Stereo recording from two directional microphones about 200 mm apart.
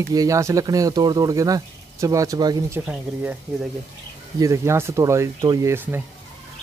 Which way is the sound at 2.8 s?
5° right (ahead or behind).